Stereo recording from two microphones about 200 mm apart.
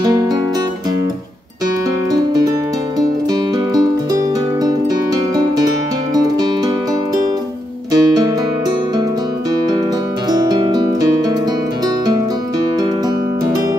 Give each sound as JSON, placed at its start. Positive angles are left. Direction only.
{"t": 7.9, "sound": "music", "side_deg": -20}
{"t": 10.3, "sound": "music", "side_deg": -20}